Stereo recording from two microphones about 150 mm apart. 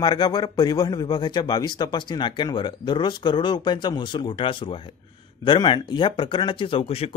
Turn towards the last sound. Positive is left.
turn(degrees=40)  # may be behind; listen again after turning